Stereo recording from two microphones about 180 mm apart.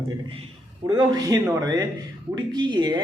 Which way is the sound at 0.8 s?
20° right (ahead or behind).